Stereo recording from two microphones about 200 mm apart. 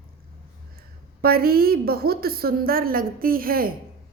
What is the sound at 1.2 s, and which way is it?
A woman's voice, 50° right (ahead or behind).